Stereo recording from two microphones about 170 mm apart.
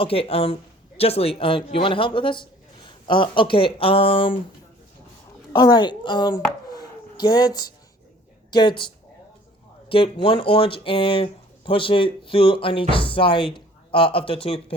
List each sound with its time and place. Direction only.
0.0 s a man's voice: 35° left (ahead or behind)
5.5 s a woman's voice: 25° left (ahead or behind)
6.7 s a sound: 25° left (ahead or behind)
8.4 s speech: 25° left (ahead or behind)
9.9 s a man's voice: 30° left (ahead or behind)